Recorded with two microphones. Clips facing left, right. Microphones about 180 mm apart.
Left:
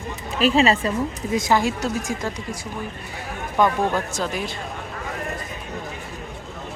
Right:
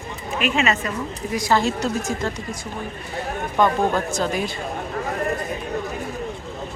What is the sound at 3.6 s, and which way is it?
Speech, 5° left (ahead or behind).